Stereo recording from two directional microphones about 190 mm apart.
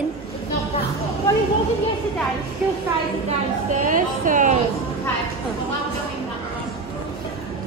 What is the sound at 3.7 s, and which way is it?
Speech, 45° right (ahead or behind).